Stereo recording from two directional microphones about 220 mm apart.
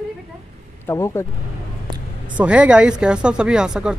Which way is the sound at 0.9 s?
15° left (ahead or behind).